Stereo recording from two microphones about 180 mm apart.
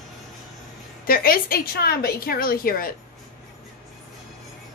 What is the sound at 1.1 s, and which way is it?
Speech, 55° left (ahead or behind).